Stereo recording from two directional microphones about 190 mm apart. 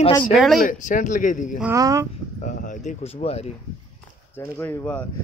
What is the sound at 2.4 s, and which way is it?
Speech, 40° left (ahead or behind).